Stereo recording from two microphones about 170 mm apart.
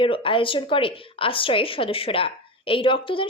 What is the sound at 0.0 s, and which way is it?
A woman's voice, 30° left (ahead or behind).